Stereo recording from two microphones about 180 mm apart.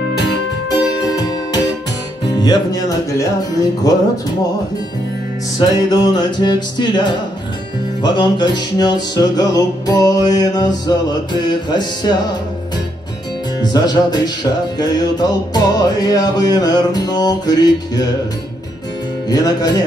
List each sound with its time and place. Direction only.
0.7 s music: 20° left (ahead or behind)
5.6 s music: 20° left (ahead or behind)
13.6 s music: 25° left (ahead or behind)
19.2 s music: 20° left (ahead or behind)